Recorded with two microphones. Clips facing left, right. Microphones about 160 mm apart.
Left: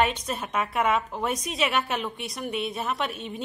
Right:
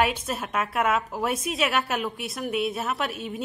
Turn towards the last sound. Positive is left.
turn(degrees=-5)  # may be behind; listen again after turning